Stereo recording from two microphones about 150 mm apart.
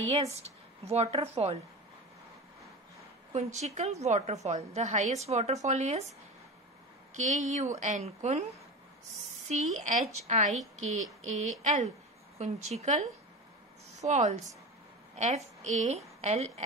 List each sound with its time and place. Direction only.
0.1 s a woman's voice: 45° right (ahead or behind)
3.5 s a woman's voice: 50° right (ahead or behind)
7.2 s a woman's voice: 55° right (ahead or behind)
9.5 s a woman's voice: 55° right (ahead or behind)